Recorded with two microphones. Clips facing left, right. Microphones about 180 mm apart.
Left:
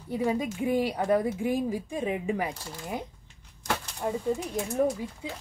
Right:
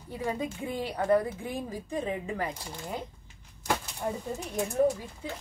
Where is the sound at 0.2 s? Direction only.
10° left (ahead or behind).